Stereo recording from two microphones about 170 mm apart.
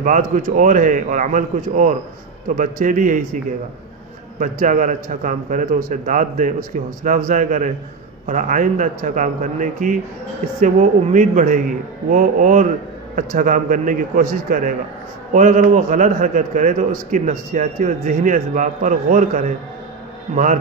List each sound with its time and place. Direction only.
0.0 s a man's voice: 50° right (ahead or behind)
4.4 s a man's voice: 50° right (ahead or behind)